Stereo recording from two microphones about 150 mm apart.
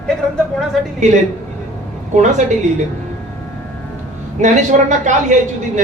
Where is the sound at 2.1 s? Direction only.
55° right (ahead or behind).